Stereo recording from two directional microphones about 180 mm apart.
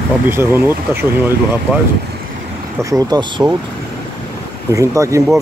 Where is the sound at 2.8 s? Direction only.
20° right (ahead or behind).